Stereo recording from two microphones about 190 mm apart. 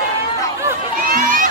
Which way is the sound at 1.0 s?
45° right (ahead or behind).